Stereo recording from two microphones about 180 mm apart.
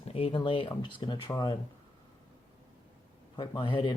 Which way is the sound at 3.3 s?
25° left (ahead or behind).